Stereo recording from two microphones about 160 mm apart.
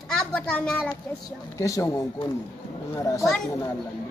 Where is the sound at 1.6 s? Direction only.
20° left (ahead or behind).